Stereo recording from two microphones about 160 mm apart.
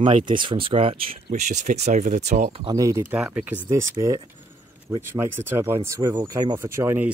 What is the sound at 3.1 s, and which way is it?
Speech, 10° right (ahead or behind).